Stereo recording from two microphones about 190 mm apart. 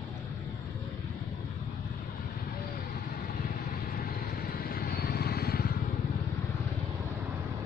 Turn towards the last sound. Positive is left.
turn(degrees=55)  # may be behind; listen again after turning